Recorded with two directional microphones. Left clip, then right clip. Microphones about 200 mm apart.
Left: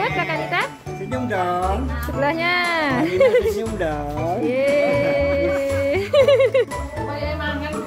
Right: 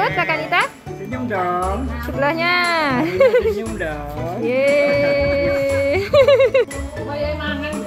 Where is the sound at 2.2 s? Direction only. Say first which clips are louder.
Right 3 dB; centre (ahead or behind).